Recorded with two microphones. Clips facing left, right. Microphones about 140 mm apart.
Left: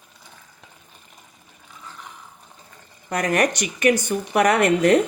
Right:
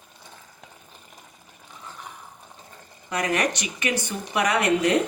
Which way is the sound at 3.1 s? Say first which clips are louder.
Left 4 dB; 45° left (ahead or behind).